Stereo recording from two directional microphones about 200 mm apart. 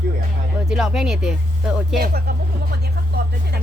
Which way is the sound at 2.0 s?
50° right (ahead or behind).